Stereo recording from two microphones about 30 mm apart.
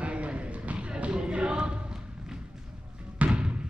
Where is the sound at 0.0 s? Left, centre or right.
Right.